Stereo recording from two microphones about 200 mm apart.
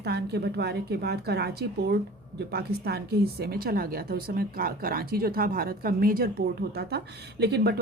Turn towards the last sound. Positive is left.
turn(degrees=-55)  # may be behind; listen again after turning